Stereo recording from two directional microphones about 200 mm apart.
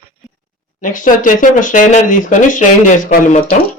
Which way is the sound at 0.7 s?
40° left (ahead or behind).